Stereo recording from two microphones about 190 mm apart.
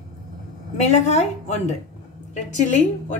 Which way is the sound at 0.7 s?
35° left (ahead or behind).